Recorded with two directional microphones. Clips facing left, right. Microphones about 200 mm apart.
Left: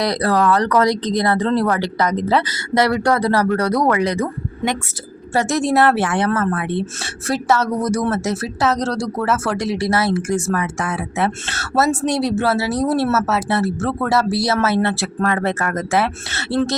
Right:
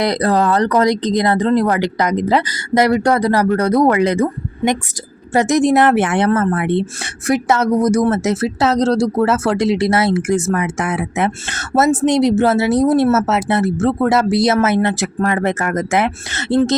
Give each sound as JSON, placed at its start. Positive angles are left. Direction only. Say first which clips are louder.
{"t": 0.0, "sound": "speech", "louder": "right 2 dB", "side_deg": -20}